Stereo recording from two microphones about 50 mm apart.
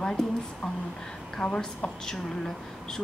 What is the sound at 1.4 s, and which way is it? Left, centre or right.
Speech, centre.